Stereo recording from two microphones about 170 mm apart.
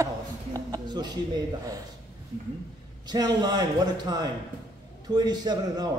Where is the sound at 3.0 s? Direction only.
25° right (ahead or behind).